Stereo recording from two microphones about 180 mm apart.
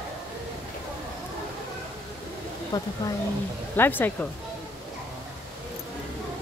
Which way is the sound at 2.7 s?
20° left (ahead or behind).